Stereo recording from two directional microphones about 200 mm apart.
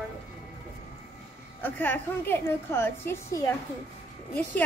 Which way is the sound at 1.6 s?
10° left (ahead or behind).